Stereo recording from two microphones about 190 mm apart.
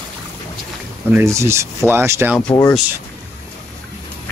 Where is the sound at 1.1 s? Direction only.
15° right (ahead or behind).